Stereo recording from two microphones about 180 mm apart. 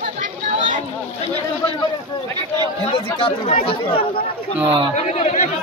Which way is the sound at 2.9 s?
30° left (ahead or behind).